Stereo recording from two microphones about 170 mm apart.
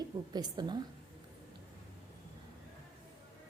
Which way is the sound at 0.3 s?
25° right (ahead or behind).